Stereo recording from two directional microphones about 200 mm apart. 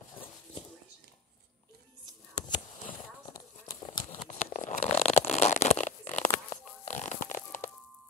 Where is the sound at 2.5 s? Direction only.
20° left (ahead or behind).